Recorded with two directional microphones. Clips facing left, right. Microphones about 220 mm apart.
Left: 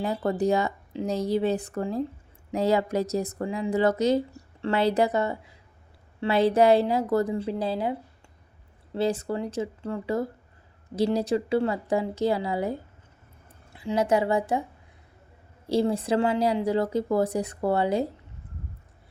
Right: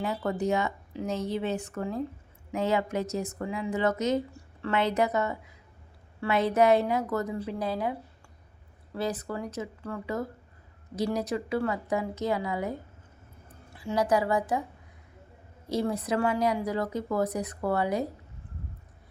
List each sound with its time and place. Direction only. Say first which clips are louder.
0.0 s speech: left 4 dB; 35° left (ahead or behind)
13.7 s speech: left 2 dB; 25° left (ahead or behind)
15.7 s speech: left 5 dB; 30° left (ahead or behind)